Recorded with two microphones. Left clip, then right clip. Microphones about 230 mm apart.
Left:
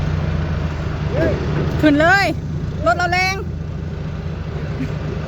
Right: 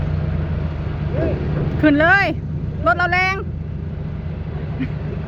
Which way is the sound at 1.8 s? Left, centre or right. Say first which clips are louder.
Even; centre.